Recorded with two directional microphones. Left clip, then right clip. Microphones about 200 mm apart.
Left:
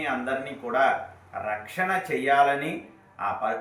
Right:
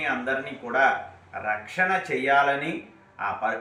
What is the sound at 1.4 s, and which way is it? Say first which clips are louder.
Mantra: right 3 dB; 15° left (ahead or behind).